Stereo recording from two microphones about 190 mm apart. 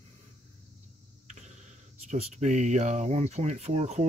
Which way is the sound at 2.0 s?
40° right (ahead or behind).